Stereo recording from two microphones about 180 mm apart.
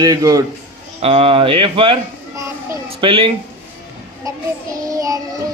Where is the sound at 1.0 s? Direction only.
30° right (ahead or behind).